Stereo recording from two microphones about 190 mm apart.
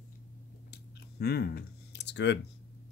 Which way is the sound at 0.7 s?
55° left (ahead or behind).